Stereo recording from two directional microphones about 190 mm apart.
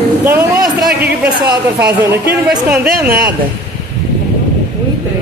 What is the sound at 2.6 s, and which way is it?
Speech, 5° right (ahead or behind).